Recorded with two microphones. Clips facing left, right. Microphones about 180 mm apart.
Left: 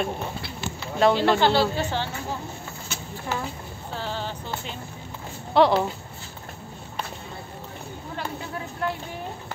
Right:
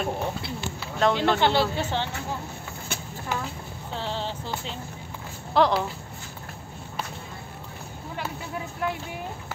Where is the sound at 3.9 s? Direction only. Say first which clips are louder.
Even; 25° right (ahead or behind).